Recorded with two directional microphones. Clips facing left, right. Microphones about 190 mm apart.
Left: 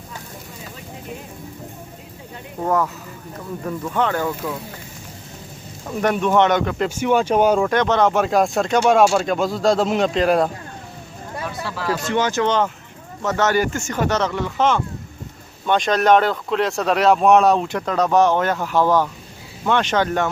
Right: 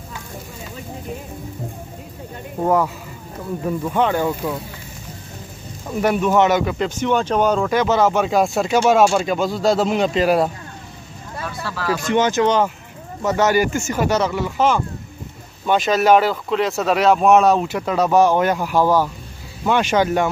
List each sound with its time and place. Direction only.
2.6 s speech: 10° right (ahead or behind)
5.9 s speech: 5° right (ahead or behind)
6.9 s speech: 10° left (ahead or behind)
7.7 s speech: 5° right (ahead or behind)
11.3 s a sound: 15° left (ahead or behind)
11.9 s speech: 15° right (ahead or behind)